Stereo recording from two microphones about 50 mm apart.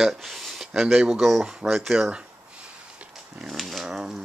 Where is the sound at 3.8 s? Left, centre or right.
Centre.